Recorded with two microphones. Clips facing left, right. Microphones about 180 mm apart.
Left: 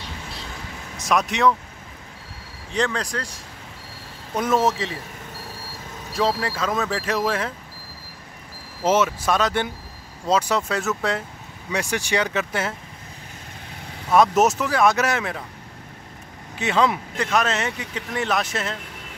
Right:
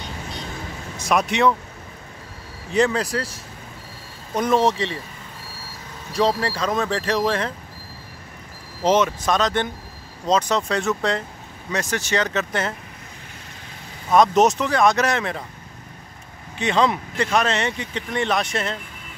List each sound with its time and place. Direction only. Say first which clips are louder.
0.9 s speech: right 2 dB; centre (ahead or behind)
2.7 s speech: right 5 dB; 5° right (ahead or behind)
4.4 s speech: right 2 dB; 5° left (ahead or behind)
6.1 s speech: right 2 dB; 5° left (ahead or behind)
8.8 s speech: right 1 dB; 5° left (ahead or behind)
14.1 s speech: right 1 dB; 5° left (ahead or behind)
16.5 s speech: right 1 dB; 5° left (ahead or behind)